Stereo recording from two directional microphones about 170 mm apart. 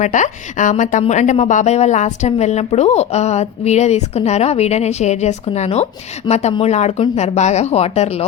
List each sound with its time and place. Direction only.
0.0 s a woman's voice: 45° left (ahead or behind)